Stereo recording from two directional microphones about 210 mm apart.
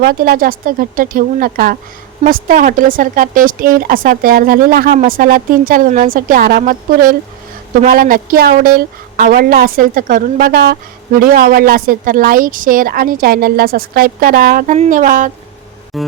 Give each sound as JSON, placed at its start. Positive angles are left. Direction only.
{"t": 0.0, "sound": "a woman's voice", "side_deg": -45}
{"t": 15.9, "sound": "music", "side_deg": 0}